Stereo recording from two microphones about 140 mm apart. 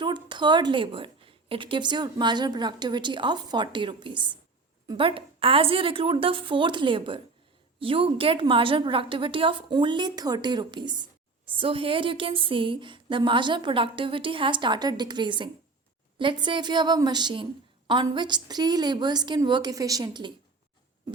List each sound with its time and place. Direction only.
0.0 s a woman's voice: 35° right (ahead or behind)